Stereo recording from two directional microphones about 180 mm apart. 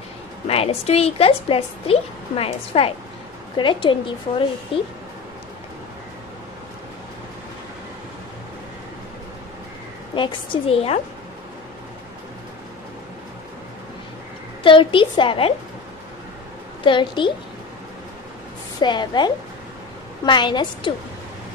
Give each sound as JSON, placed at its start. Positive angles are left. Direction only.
{"t": 0.5, "sound": "a woman's voice", "side_deg": 35}
{"t": 10.1, "sound": "a woman's voice", "side_deg": 25}
{"t": 14.6, "sound": "a woman's voice", "side_deg": 30}
{"t": 16.8, "sound": "a woman's voice", "side_deg": 25}
{"t": 18.8, "sound": "a woman's voice", "side_deg": 25}